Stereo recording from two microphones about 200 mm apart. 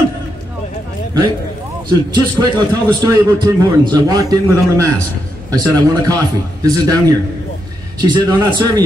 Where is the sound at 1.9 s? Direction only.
20° right (ahead or behind).